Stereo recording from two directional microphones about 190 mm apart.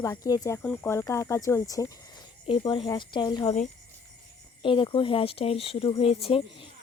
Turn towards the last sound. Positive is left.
turn(degrees=30)  # may be behind; listen again after turning